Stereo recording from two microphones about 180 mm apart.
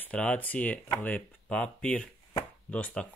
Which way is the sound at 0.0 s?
5° left (ahead or behind).